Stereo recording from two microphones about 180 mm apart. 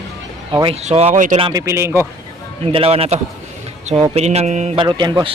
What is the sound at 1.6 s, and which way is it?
Speech, 15° right (ahead or behind).